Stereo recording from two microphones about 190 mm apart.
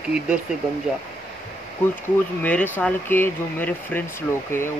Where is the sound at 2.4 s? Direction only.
10° left (ahead or behind).